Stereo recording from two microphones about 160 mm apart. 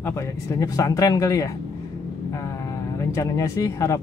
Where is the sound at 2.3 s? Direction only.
20° left (ahead or behind).